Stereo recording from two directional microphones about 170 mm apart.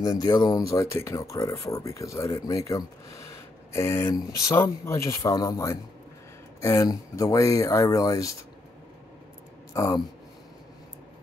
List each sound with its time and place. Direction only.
0.0 s speech: 20° left (ahead or behind)
9.8 s speech: 20° left (ahead or behind)